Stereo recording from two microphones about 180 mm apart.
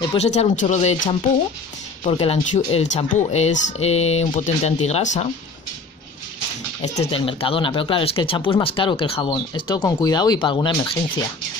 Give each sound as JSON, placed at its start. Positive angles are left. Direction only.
{"t": 0.0, "sound": "speech", "side_deg": 30}
{"t": 6.8, "sound": "speech", "side_deg": 35}